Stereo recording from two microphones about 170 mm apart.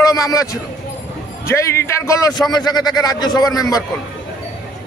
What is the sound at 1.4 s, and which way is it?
A man's voice, 15° left (ahead or behind).